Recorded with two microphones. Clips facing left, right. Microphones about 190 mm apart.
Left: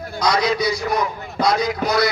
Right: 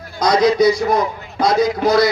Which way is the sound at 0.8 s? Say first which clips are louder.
Right 5 dB; 50° right (ahead or behind).